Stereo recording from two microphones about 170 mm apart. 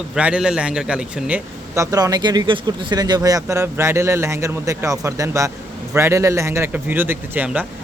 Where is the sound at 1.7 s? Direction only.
20° right (ahead or behind).